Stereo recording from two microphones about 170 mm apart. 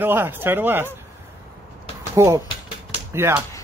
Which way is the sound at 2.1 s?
15° right (ahead or behind).